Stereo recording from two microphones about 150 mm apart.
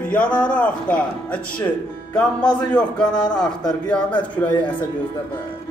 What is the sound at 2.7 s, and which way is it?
Speech, 5° left (ahead or behind).